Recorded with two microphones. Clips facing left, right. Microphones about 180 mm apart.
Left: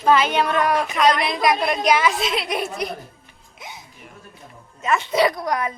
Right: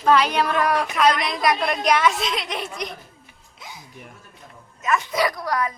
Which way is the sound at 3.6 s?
20° left (ahead or behind).